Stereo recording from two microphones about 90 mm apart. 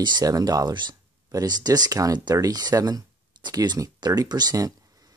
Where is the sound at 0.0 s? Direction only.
45° right (ahead or behind).